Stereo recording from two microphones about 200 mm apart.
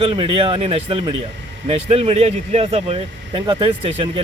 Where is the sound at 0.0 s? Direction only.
25° right (ahead or behind).